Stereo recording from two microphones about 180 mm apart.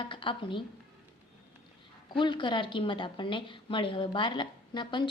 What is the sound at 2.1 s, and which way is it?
A woman's voice, 25° left (ahead or behind).